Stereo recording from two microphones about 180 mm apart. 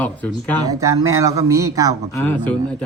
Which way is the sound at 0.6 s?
20° right (ahead or behind).